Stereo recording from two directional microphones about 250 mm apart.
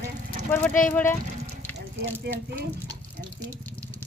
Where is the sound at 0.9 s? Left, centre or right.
Centre.